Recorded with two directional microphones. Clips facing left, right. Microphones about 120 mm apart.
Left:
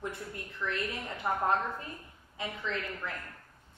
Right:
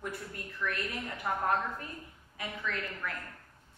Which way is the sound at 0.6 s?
20° left (ahead or behind).